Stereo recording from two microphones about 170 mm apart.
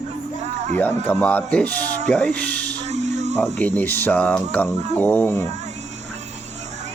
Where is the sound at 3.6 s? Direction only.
10° left (ahead or behind).